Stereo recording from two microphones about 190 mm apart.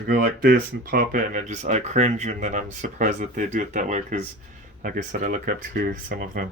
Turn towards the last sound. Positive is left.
turn(degrees=-45)  # may be behind; listen again after turning